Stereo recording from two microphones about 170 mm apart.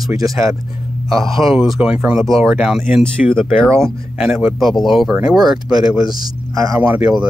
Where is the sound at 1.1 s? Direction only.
Centre (ahead or behind).